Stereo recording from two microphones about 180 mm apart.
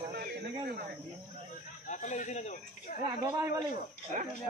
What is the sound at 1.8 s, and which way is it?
A man's voice, 45° left (ahead or behind).